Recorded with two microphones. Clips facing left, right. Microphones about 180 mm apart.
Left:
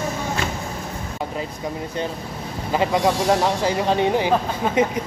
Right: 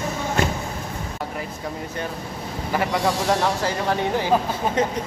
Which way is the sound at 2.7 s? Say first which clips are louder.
Left 3 dB; 20° left (ahead or behind).